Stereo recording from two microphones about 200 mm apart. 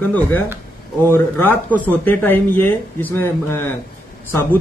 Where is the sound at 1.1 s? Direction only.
10° left (ahead or behind).